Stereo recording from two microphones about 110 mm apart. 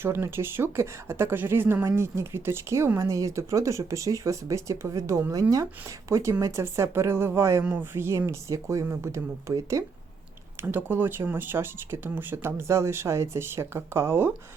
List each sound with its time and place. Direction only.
0.0 s speech: 20° right (ahead or behind)